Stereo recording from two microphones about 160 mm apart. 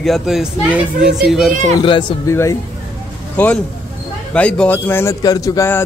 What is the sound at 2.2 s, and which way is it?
Speech, 15° left (ahead or behind).